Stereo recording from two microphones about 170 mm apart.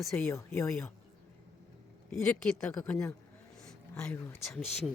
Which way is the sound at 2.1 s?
5° left (ahead or behind).